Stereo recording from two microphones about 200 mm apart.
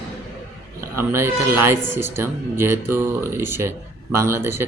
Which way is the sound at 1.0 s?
10° right (ahead or behind).